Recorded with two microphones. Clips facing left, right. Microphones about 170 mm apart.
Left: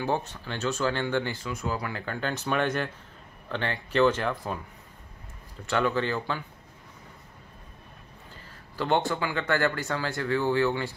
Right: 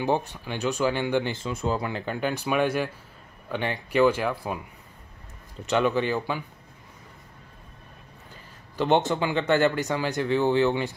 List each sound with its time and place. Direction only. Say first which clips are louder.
0.0 s speech: right 3 dB; 15° right (ahead or behind)
5.7 s speech: right 3 dB; 20° right (ahead or behind)
8.7 s speech: right 4 dB; 20° right (ahead or behind)